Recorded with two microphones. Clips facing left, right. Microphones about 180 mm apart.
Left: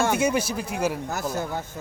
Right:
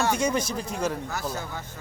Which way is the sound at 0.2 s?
10° left (ahead or behind).